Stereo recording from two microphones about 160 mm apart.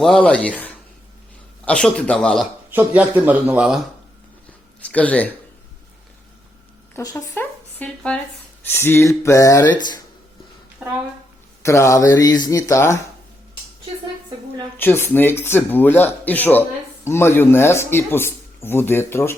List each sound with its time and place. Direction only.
0.0 s speech: 5° left (ahead or behind)
2.6 s speech: 10° right (ahead or behind)
4.8 s speech: 10° left (ahead or behind)
6.9 s speech: 20° left (ahead or behind)
7.8 s speech: 5° left (ahead or behind); by 10.0 s 25° left (ahead or behind)
11.6 s speech: 20° left (ahead or behind)
14.8 s speech: 15° left (ahead or behind)